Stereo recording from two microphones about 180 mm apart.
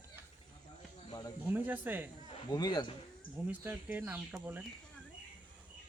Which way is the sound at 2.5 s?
25° left (ahead or behind).